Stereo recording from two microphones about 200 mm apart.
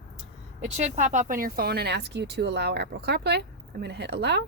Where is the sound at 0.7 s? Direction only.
35° right (ahead or behind).